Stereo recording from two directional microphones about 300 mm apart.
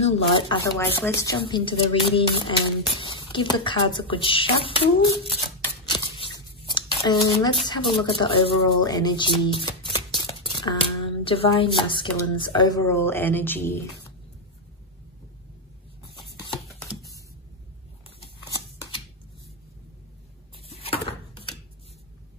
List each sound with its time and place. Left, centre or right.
0.0 s speech: centre
5.6 s scissors: centre
7.9 s speech: centre
9.7 s music: centre
11.2 s speech: centre
16.5 s a sound: centre
20.7 s a sound: centre